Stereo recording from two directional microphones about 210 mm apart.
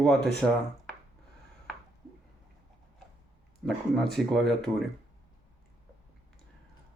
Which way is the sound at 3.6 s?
Centre (ahead or behind).